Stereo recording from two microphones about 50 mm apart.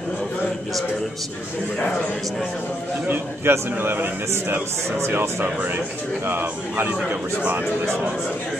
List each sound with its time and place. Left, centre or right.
3.1 s a man's voice: right
3.8 s speech: right
5.4 s a man's voice: right
7.1 s speech: right